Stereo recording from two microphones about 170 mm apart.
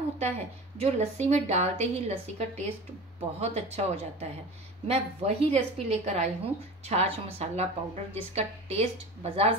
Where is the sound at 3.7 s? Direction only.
40° right (ahead or behind).